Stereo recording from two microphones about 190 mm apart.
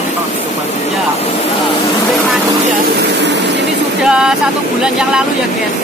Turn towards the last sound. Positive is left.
turn(degrees=-5)  # may be behind; listen again after turning